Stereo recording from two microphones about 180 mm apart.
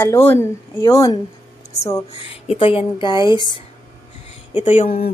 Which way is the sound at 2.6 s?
30° left (ahead or behind).